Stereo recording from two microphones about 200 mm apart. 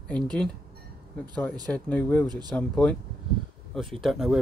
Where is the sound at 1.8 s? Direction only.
10° left (ahead or behind).